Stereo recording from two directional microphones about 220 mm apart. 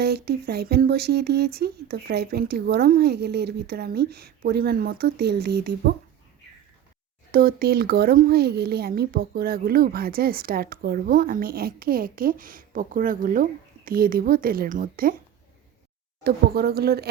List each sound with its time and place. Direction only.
0.0 s speech: 45° right (ahead or behind)
7.3 s speech: 40° right (ahead or behind)
16.2 s speech: 45° right (ahead or behind)